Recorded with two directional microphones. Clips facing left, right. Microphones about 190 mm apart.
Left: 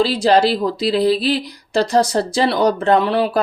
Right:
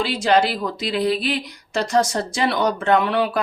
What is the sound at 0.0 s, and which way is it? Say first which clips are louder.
Speech: left 4 dB; 35° left (ahead or behind).